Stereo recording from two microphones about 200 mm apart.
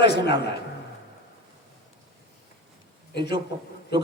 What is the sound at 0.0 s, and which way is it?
Speech, 55° left (ahead or behind).